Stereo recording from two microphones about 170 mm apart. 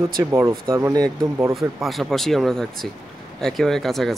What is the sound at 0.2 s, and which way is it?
Speech, 15° right (ahead or behind).